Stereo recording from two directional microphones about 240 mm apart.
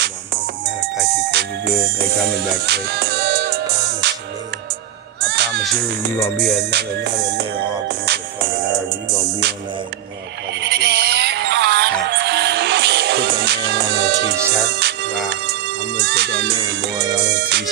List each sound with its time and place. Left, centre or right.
2.6 s music: right
5.3 s music: right
6.2 s music: centre
6.7 s music: right
10.6 s music: right
16.0 s music: right